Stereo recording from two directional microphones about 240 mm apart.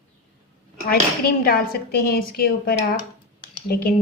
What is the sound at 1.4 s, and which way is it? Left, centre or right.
A woman's voice, left.